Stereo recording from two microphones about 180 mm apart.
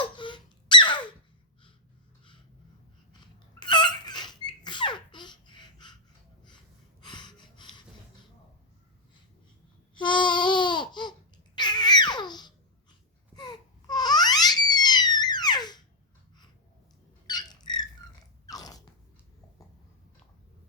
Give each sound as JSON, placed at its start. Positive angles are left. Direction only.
{"t": 0.2, "sound": "squeak", "side_deg": 25}
{"t": 3.6, "sound": "a sound", "side_deg": 25}
{"t": 7.0, "sound": "snort", "side_deg": 25}
{"t": 9.9, "sound": "babbling", "side_deg": 25}
{"t": 13.3, "sound": "a sound", "side_deg": 25}
{"t": 17.2, "sound": "squeak", "side_deg": 25}
{"t": 18.4, "sound": "biting", "side_deg": 20}